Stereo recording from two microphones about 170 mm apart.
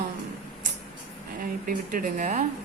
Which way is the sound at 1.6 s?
55° right (ahead or behind).